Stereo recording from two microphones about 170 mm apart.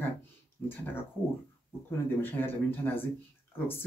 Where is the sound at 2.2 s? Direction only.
10° left (ahead or behind).